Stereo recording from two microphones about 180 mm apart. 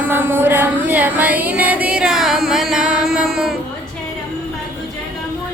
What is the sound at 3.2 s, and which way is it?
Child singing, centre (ahead or behind).